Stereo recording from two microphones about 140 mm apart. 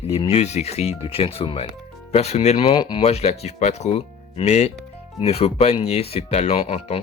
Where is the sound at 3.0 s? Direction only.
50° left (ahead or behind).